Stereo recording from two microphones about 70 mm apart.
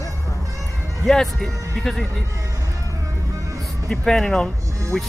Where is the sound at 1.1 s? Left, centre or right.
Centre.